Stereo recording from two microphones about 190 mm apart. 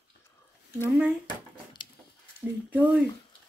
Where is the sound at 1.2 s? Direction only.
25° left (ahead or behind).